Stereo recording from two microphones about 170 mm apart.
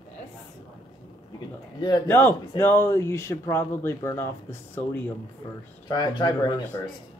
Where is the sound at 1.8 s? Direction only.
25° left (ahead or behind).